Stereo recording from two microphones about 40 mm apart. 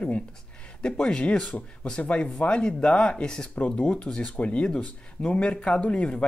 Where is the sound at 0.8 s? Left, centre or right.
Left.